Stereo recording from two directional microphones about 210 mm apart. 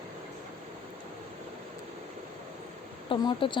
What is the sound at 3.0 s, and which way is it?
Speech, 25° left (ahead or behind).